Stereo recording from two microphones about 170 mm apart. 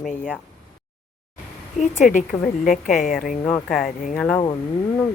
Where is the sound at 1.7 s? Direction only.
50° left (ahead or behind).